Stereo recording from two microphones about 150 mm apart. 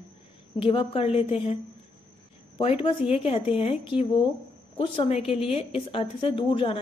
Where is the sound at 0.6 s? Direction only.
35° left (ahead or behind).